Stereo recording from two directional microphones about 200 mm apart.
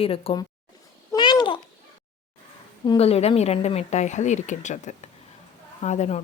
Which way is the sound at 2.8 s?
25° left (ahead or behind).